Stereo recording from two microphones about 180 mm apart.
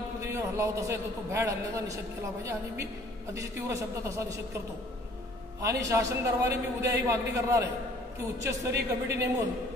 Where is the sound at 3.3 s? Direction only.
15° right (ahead or behind).